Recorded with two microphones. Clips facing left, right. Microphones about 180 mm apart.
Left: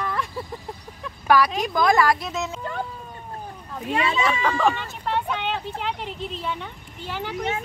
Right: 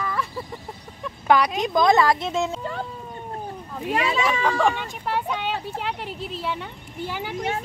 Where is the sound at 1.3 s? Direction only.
20° right (ahead or behind).